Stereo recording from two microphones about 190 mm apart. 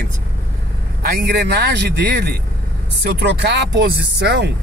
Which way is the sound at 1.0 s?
60° right (ahead or behind).